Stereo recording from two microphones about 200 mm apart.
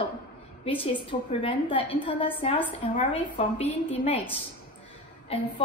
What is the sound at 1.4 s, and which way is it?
A woman's voice, 25° left (ahead or behind).